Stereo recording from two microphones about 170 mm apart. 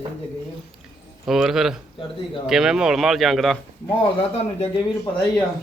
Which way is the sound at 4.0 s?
35° left (ahead or behind).